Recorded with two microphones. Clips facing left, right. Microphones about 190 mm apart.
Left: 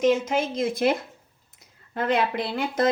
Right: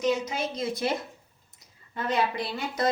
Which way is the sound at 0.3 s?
50° left (ahead or behind).